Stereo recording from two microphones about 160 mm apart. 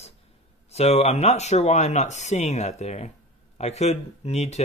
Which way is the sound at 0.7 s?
40° left (ahead or behind).